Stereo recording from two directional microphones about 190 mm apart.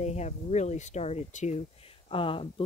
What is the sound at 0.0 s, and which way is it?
Speech, 35° left (ahead or behind).